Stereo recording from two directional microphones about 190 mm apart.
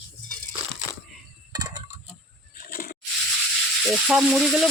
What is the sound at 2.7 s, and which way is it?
Rub, 50° left (ahead or behind).